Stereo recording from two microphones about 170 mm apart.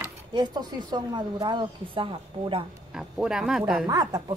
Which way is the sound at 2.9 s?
5° right (ahead or behind).